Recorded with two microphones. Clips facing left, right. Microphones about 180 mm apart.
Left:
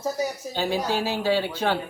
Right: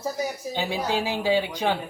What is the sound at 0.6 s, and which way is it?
A woman's voice, 15° right (ahead or behind).